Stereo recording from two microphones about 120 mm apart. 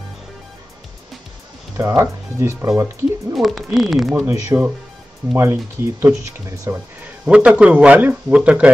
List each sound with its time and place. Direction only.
1.8 s speech: 20° right (ahead or behind)
3.3 s speech: centre (ahead or behind)
4.2 s speech: 25° right (ahead or behind)
6.7 s speech: 10° right (ahead or behind)